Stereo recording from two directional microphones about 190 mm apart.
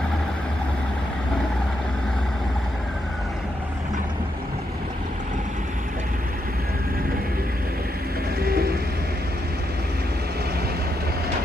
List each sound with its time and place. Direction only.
8.4 s train: 55° right (ahead or behind)